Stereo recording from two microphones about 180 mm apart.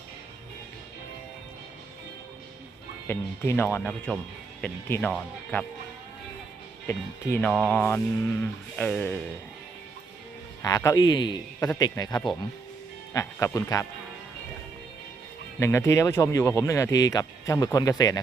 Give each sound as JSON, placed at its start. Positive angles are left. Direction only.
{"t": 3.1, "sound": "speech", "side_deg": 15}
{"t": 6.8, "sound": "speech", "side_deg": 10}
{"t": 10.6, "sound": "a man's voice", "side_deg": 15}
{"t": 15.6, "sound": "speech", "side_deg": 15}